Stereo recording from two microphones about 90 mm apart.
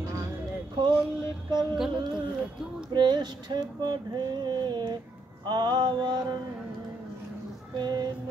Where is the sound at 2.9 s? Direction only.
55° right (ahead or behind).